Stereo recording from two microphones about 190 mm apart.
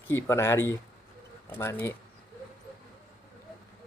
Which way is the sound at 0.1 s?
15° left (ahead or behind).